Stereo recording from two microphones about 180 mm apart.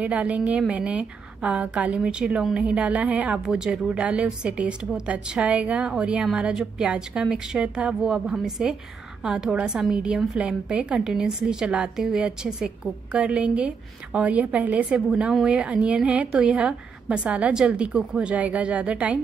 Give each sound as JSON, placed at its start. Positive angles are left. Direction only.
{"t": 0.0, "sound": "a woman's voice", "side_deg": -10}